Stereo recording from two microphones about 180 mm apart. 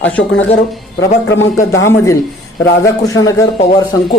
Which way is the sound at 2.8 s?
20° left (ahead or behind).